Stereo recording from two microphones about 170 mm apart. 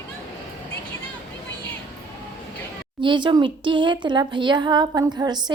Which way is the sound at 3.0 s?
30° right (ahead or behind).